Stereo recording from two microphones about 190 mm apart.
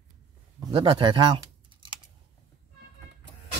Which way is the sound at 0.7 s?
25° right (ahead or behind).